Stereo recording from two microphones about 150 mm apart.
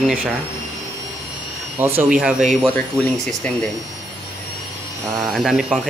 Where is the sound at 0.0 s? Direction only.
10° right (ahead or behind).